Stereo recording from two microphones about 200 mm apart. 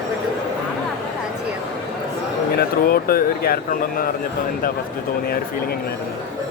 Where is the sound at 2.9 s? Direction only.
50° left (ahead or behind).